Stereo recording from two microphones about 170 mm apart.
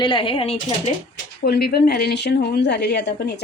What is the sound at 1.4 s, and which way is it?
A woman's voice, 65° left (ahead or behind).